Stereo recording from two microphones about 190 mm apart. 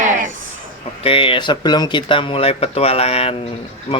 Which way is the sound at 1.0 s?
30° left (ahead or behind).